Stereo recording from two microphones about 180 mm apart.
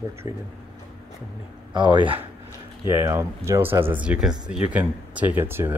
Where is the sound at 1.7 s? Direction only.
25° right (ahead or behind).